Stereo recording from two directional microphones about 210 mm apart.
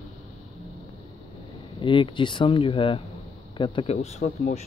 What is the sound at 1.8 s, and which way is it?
Speech, 25° left (ahead or behind).